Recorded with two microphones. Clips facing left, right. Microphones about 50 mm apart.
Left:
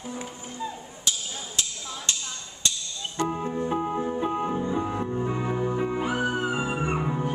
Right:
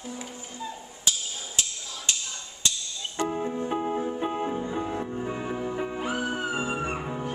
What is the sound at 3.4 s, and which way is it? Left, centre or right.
Organ, left.